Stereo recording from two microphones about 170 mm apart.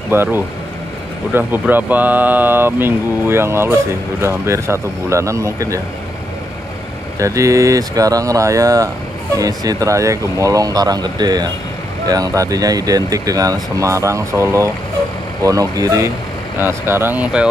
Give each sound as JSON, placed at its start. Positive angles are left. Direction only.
{"t": 0.1, "sound": "speech", "side_deg": -15}
{"t": 7.2, "sound": "speech", "side_deg": -20}